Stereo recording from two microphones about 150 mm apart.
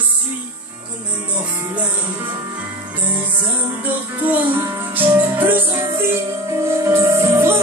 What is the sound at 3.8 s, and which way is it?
Music, 10° right (ahead or behind).